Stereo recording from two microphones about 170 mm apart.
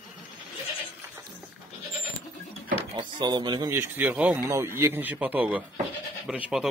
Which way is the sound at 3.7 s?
15° right (ahead or behind).